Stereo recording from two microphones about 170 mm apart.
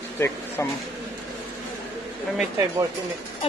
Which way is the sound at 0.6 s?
15° left (ahead or behind).